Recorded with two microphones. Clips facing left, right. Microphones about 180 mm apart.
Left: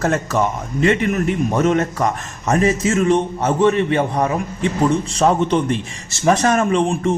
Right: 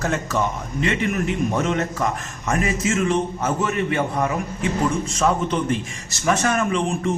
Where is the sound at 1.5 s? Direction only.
40° left (ahead or behind).